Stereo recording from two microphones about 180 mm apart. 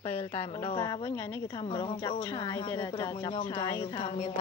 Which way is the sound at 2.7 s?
15° left (ahead or behind).